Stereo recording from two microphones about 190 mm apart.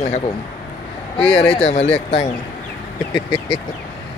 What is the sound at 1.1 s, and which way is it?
Speech, 30° left (ahead or behind).